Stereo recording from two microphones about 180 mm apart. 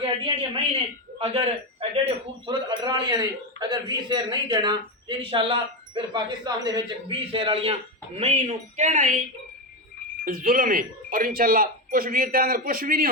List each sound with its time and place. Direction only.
0.3 s a woman's voice: 30° right (ahead or behind)
10.2 s speech: 50° right (ahead or behind)